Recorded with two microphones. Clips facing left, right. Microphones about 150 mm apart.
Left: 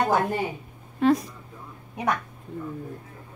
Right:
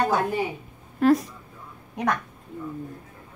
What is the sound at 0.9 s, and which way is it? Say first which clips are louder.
Speech: right 2 dB; centre (ahead or behind).